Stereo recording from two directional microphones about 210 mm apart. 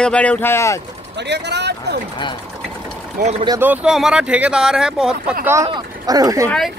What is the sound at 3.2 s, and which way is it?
Speech, 25° right (ahead or behind).